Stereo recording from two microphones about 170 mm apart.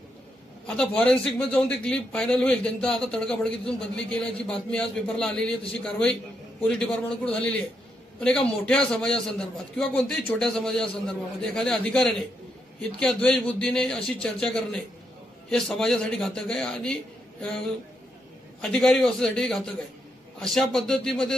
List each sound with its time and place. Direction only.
0.7 s a man's voice: 5° left (ahead or behind)
18.6 s a man's voice: 5° left (ahead or behind)